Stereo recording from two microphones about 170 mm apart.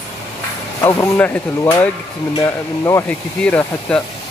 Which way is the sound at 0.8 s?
15° left (ahead or behind).